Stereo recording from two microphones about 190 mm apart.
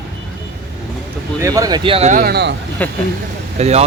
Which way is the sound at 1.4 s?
15° right (ahead or behind).